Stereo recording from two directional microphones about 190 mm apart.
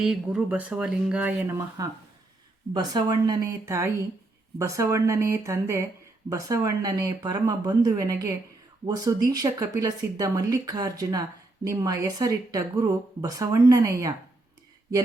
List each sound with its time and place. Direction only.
0.0 s speech: 5° right (ahead or behind)